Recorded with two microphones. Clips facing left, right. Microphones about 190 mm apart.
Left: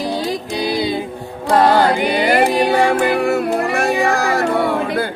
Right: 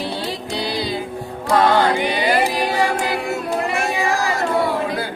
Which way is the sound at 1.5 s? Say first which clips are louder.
Left 3 dB; 35° left (ahead or behind).